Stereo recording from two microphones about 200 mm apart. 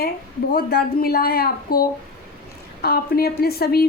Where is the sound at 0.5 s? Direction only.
50° left (ahead or behind).